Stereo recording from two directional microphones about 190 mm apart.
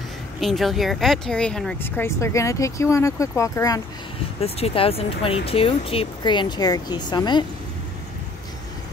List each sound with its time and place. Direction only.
0.4 s speech: centre (ahead or behind); by 3.8 s 15° left (ahead or behind)
4.4 s speech: 30° left (ahead or behind)